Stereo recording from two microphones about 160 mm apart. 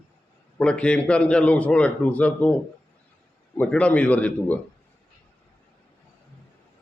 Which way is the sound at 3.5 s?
10° left (ahead or behind).